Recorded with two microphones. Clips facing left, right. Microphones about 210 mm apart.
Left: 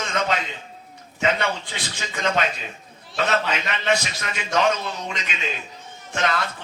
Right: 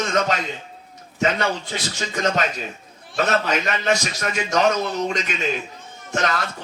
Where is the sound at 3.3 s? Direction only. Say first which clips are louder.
Right 3 dB; 45° right (ahead or behind).